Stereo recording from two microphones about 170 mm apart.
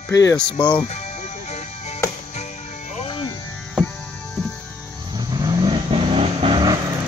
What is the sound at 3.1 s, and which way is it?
Music, 30° left (ahead or behind).